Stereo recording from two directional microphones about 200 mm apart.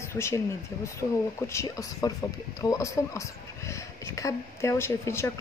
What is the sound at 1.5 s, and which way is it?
Speech, 15° left (ahead or behind).